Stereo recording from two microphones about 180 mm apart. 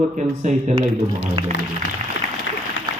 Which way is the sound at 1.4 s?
20° right (ahead or behind).